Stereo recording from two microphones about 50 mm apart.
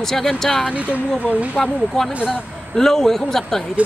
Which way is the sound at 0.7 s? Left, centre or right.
Right.